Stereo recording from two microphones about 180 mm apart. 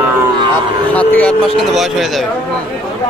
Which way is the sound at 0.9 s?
5° left (ahead or behind).